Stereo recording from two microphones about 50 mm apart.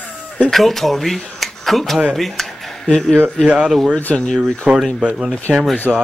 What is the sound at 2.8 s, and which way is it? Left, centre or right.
Speech, centre.